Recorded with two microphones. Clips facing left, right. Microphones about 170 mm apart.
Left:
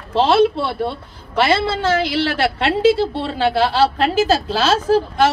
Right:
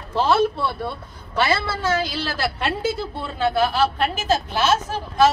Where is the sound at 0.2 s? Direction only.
80° left.